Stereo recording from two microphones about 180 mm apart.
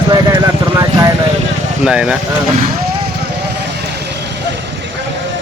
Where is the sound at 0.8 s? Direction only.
20° right (ahead or behind).